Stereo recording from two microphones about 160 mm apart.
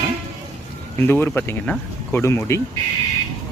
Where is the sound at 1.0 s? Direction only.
15° left (ahead or behind).